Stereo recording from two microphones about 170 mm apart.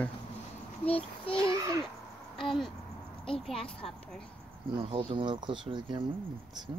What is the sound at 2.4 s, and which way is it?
A child's voice, centre (ahead or behind).